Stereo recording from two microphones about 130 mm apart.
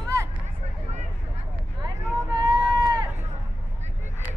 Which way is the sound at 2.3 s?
30° right (ahead or behind).